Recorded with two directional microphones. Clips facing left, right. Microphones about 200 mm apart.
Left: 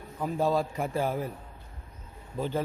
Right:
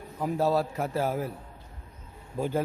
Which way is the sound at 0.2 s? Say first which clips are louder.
Right 1 dB; 5° right (ahead or behind).